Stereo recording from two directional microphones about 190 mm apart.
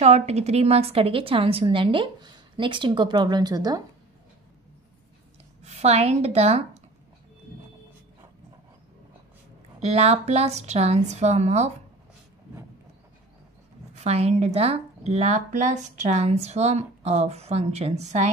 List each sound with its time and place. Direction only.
0.0 s a woman's voice: 35° right (ahead or behind)
5.6 s a woman's voice: 35° right (ahead or behind)
9.8 s a woman's voice: 35° right (ahead or behind)
13.9 s a woman's voice: 35° right (ahead or behind)